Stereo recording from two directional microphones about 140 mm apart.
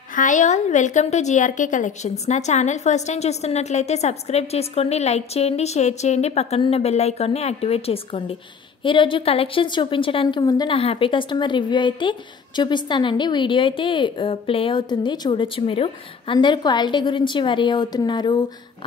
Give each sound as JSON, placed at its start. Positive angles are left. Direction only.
{"t": 0.1, "sound": "a woman's voice", "side_deg": 65}